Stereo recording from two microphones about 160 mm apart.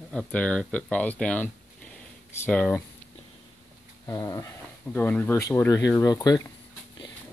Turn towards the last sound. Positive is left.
turn(degrees=25)  # may be behind; listen again after turning